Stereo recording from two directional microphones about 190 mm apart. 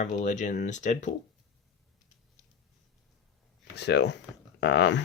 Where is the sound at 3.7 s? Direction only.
60° left (ahead or behind).